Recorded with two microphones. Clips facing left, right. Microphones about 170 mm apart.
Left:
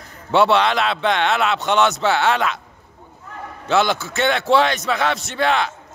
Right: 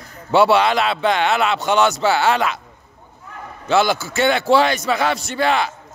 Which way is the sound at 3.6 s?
Centre (ahead or behind).